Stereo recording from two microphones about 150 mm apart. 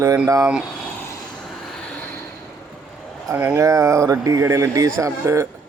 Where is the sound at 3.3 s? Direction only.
15° right (ahead or behind).